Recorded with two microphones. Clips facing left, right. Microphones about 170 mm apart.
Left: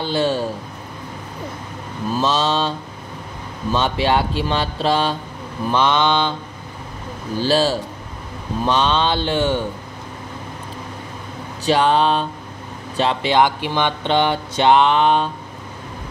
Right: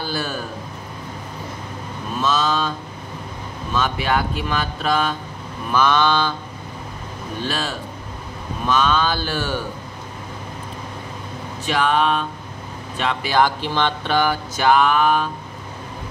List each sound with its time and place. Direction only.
0.0 s speech: 25° left (ahead or behind)
2.1 s speech: 30° left (ahead or behind)
3.7 s speech: 30° left (ahead or behind)
7.3 s speech: 30° left (ahead or behind)
11.6 s speech: 30° left (ahead or behind)